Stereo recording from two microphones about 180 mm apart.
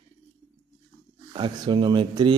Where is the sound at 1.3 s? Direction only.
25° right (ahead or behind).